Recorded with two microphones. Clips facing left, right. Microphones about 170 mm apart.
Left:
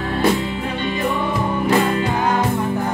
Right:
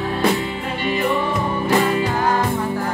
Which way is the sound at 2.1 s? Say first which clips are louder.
Even; 20° left (ahead or behind).